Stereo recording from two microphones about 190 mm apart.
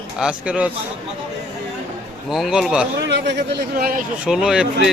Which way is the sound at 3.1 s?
65° right (ahead or behind).